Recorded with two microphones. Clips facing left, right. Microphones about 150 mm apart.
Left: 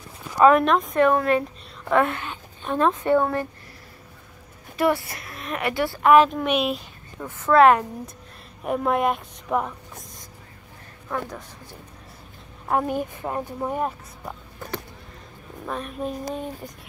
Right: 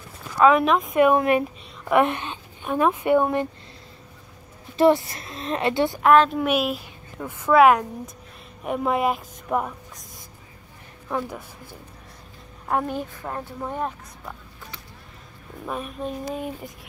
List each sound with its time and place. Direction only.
0.4 s a woman's voice: centre (ahead or behind)
0.9 s a woman's voice: 15° right (ahead or behind)
4.7 s a woman's voice: 25° right (ahead or behind)
6.0 s a woman's voice: 5° left (ahead or behind)
11.1 s speech: 10° right (ahead or behind)
12.6 s speech: 5° left (ahead or behind)
15.6 s a woman's voice: 5° right (ahead or behind)